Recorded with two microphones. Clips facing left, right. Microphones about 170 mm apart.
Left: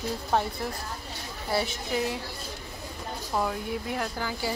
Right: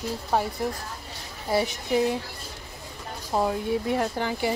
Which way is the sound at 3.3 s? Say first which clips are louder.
Right 5 dB; 30° right (ahead or behind).